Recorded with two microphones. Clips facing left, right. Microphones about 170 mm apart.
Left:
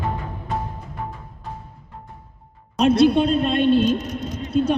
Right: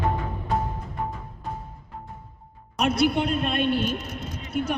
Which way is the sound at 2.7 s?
25° left (ahead or behind).